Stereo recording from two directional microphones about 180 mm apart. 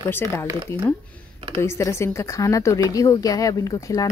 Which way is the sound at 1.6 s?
15° left (ahead or behind).